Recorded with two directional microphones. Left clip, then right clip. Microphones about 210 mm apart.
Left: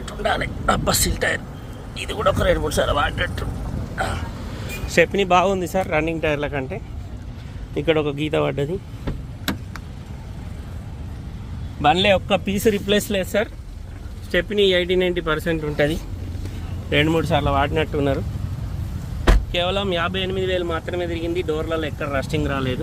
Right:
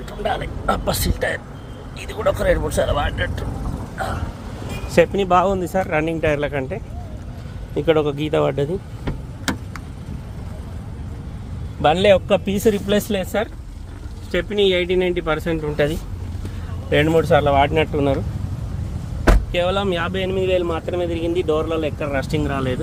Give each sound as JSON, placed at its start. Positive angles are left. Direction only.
{"t": 0.0, "sound": "speech", "side_deg": 25}
{"t": 3.9, "sound": "vehicle", "side_deg": 15}
{"t": 4.9, "sound": "speech", "side_deg": 10}
{"t": 11.8, "sound": "speech", "side_deg": -5}
{"t": 19.5, "sound": "speech", "side_deg": -5}